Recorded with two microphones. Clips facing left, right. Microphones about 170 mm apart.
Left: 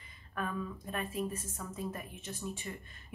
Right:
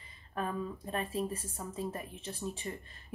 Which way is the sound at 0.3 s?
30° right (ahead or behind).